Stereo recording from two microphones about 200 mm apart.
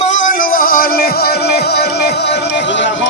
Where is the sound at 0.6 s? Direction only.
45° left (ahead or behind).